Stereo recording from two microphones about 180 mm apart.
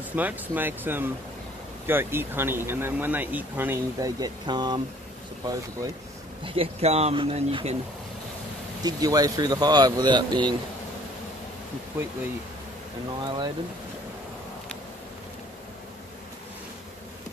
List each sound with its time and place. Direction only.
0.1 s speech: 10° right (ahead or behind)
6.4 s speech: 30° right (ahead or behind)
8.8 s speech: 20° right (ahead or behind)
11.9 s speech: 15° right (ahead or behind)
13.2 s speech: 25° right (ahead or behind)